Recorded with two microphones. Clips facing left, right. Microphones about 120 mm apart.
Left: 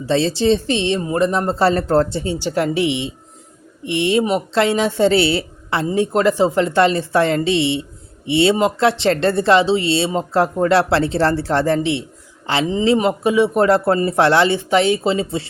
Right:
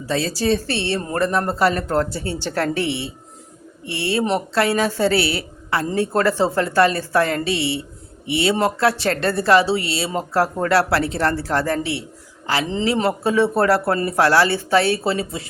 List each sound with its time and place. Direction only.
0.0 s a woman's voice: 25° left (ahead or behind)